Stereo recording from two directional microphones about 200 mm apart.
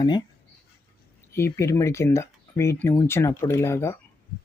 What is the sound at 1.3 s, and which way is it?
Speech, 15° left (ahead or behind).